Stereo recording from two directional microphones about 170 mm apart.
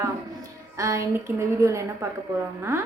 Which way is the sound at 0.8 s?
15° right (ahead or behind).